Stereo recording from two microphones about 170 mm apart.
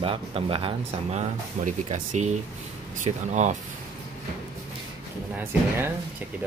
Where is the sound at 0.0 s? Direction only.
30° right (ahead or behind).